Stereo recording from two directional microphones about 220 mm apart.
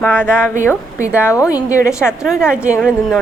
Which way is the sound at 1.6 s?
5° right (ahead or behind).